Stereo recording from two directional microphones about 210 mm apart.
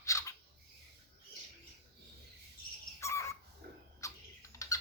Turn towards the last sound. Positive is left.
turn(degrees=15)  # may be behind; listen again after turning